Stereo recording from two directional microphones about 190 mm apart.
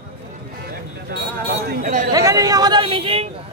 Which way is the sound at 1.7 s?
45° right (ahead or behind).